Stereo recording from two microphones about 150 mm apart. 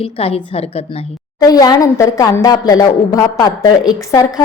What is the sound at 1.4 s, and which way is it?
A woman's voice, 25° left (ahead or behind).